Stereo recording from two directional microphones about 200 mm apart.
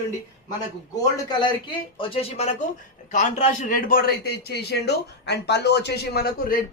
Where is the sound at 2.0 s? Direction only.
30° left (ahead or behind).